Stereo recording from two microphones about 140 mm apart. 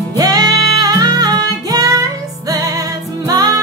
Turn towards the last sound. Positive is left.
turn(degrees=-25)  # may be behind; listen again after turning